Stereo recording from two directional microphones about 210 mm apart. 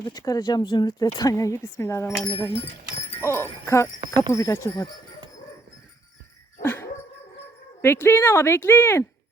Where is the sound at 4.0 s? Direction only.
20° right (ahead or behind).